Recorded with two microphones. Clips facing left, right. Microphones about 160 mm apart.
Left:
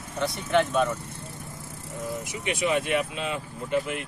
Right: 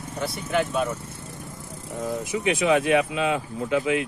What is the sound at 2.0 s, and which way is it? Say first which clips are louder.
Speech: right 6 dB; 90° right.